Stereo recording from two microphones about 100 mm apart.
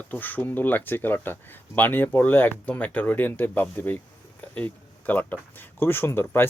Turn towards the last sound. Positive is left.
turn(degrees=25)  # may be behind; listen again after turning